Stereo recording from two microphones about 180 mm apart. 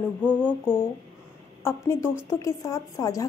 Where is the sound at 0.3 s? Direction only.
10° left (ahead or behind).